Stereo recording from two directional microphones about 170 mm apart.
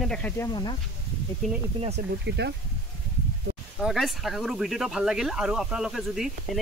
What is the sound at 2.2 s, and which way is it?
Speech, 80° right.